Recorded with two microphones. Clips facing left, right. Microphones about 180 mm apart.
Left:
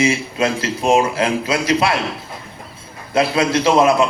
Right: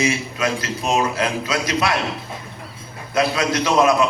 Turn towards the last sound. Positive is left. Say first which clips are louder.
# left 3 dB
turn(degrees=30)  # may be behind; listen again after turning